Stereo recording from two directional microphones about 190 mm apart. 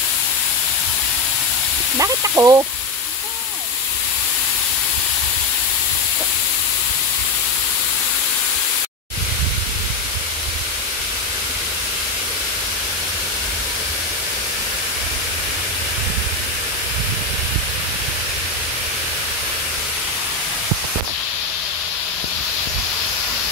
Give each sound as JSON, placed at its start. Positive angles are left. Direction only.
{"t": 2.0, "sound": "speech", "side_deg": -15}